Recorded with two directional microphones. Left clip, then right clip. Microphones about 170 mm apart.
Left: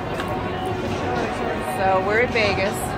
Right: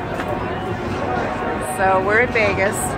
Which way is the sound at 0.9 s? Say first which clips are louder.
Right 5 dB; 70° left (ahead or behind).